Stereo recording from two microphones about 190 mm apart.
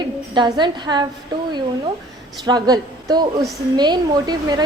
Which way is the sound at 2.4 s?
20° right (ahead or behind).